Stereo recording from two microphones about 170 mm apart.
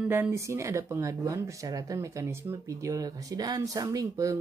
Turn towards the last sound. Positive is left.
turn(degrees=-20)  # may be behind; listen again after turning